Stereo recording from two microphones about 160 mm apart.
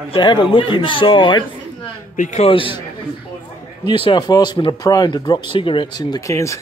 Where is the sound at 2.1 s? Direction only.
45° left (ahead or behind).